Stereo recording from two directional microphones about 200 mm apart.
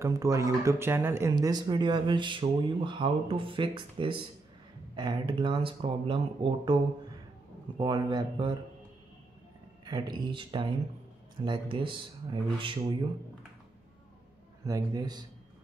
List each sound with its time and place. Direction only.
0.0 s speech: 15° right (ahead or behind)
9.8 s speech: 20° right (ahead or behind)
14.6 s a man's voice: 15° right (ahead or behind)